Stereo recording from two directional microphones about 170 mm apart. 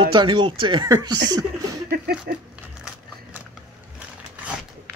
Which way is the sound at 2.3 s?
65° right (ahead or behind).